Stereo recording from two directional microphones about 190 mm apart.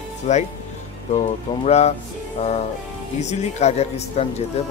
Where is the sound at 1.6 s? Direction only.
35° left (ahead or behind).